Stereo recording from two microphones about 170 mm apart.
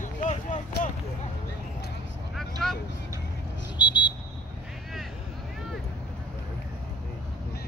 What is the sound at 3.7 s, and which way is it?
Vehicle, 25° left (ahead or behind).